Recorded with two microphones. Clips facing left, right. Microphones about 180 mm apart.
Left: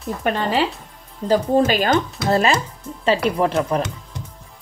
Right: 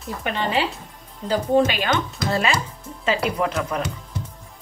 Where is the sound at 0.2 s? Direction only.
40° left (ahead or behind).